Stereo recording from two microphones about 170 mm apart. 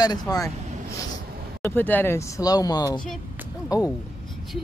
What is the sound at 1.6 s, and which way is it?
Speech, 10° left (ahead or behind).